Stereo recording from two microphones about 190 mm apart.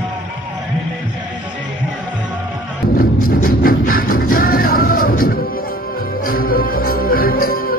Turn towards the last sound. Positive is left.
turn(degrees=50)  # may be behind; listen again after turning